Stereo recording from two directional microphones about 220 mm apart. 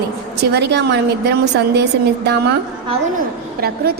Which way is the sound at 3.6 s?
45° right (ahead or behind).